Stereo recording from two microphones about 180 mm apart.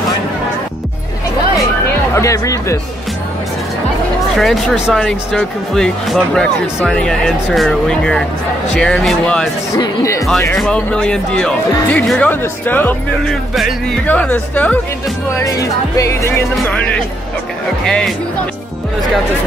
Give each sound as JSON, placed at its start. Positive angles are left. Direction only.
{"t": 2.1, "sound": "music", "side_deg": 20}
{"t": 4.4, "sound": "speech", "side_deg": 0}
{"t": 9.8, "sound": "music", "side_deg": 15}
{"t": 10.6, "sound": "speech", "side_deg": 5}
{"t": 14.0, "sound": "music", "side_deg": 10}
{"t": 17.8, "sound": "speech", "side_deg": 5}